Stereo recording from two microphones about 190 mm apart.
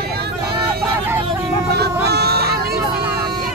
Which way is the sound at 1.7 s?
60° right (ahead or behind).